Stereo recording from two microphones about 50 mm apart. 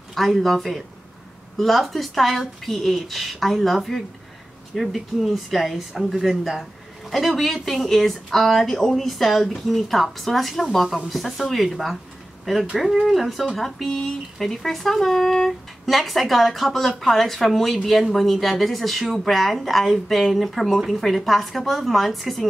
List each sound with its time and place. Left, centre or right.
0.1 s speech: centre